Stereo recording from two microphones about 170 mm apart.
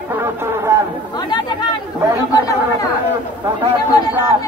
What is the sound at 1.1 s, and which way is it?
Chatter, 25° left (ahead or behind).